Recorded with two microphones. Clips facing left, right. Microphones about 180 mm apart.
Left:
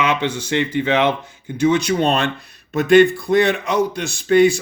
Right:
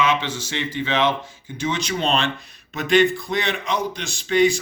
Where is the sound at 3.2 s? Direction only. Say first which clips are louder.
Left 8 dB; 60° left (ahead or behind).